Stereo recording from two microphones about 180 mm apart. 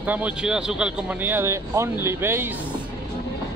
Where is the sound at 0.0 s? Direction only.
10° right (ahead or behind).